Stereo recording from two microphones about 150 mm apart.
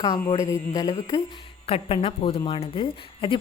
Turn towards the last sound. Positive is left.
turn(degrees=35)  # may be behind; listen again after turning